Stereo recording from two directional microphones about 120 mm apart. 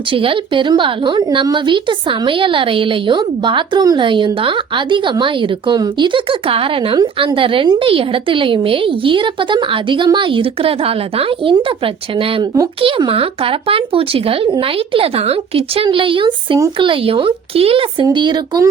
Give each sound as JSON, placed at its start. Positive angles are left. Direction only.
{"t": 0.1, "sound": "speech", "side_deg": -45}
{"t": 18.0, "sound": "speech", "side_deg": -40}